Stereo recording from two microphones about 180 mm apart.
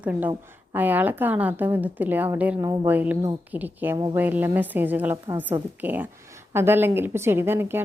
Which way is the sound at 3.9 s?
20° right (ahead or behind).